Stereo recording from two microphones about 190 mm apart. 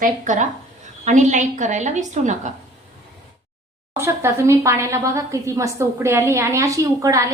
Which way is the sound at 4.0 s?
15° right (ahead or behind).